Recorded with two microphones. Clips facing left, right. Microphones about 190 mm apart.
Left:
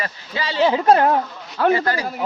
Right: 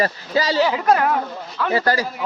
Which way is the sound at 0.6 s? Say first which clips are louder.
Left 3 dB; 30° left (ahead or behind).